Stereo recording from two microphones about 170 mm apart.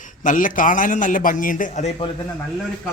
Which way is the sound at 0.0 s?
50° left (ahead or behind).